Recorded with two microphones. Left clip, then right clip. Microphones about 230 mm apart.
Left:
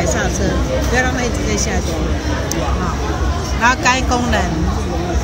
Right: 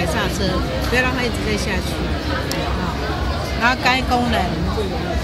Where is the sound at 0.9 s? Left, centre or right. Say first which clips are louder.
Even; centre.